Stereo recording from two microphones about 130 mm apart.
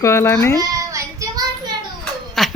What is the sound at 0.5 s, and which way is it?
Child singing, 25° right (ahead or behind).